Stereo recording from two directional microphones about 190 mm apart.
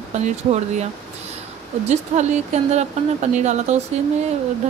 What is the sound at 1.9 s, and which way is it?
Speech, 35° right (ahead or behind).